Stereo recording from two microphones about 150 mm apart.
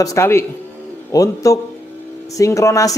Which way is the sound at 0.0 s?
20° left (ahead or behind).